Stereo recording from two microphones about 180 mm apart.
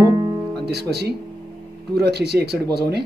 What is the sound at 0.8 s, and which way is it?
Speech, 65° right (ahead or behind).